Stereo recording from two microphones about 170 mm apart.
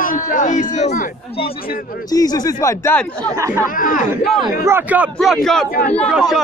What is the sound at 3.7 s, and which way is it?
Speech, 55° left (ahead or behind).